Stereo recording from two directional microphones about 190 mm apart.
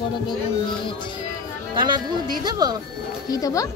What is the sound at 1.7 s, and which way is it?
Speech, 25° right (ahead or behind).